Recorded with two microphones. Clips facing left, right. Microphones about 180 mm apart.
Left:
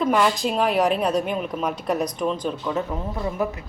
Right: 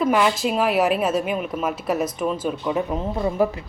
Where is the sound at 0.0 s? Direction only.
5° right (ahead or behind).